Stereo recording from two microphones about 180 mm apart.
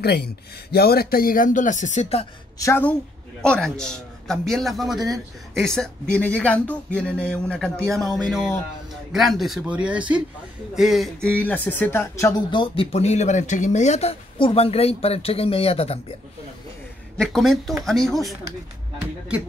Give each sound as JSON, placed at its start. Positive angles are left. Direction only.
{"t": 0.0, "sound": "speech", "side_deg": 65}
{"t": 2.6, "sound": "a man's voice", "side_deg": 10}
{"t": 12.4, "sound": "speech", "side_deg": 30}
{"t": 17.2, "sound": "a man's voice", "side_deg": 0}